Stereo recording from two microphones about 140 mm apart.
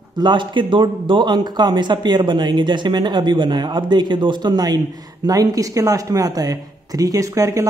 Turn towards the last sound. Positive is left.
turn(degrees=-20)  # may be behind; listen again after turning